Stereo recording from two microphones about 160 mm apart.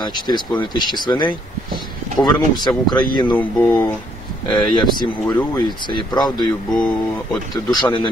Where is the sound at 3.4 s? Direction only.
10° left (ahead or behind).